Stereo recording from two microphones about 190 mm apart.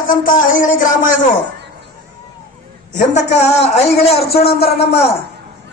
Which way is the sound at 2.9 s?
35° left (ahead or behind).